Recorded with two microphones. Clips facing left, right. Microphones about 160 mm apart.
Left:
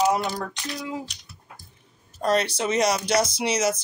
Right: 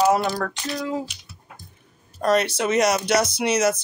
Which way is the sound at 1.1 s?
5° right (ahead or behind).